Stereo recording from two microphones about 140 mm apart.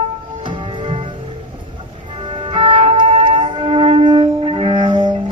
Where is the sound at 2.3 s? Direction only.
40° right (ahead or behind).